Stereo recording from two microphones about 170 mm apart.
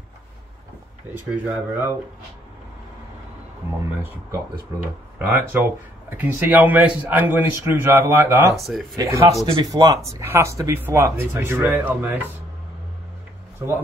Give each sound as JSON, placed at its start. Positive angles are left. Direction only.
{"t": 1.1, "sound": "speech", "side_deg": -10}
{"t": 3.9, "sound": "speech", "side_deg": -15}
{"t": 8.5, "sound": "speech", "side_deg": 0}
{"t": 8.9, "sound": "speech", "side_deg": -20}